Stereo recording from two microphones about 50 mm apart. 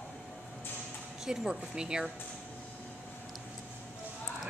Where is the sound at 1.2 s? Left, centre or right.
Centre.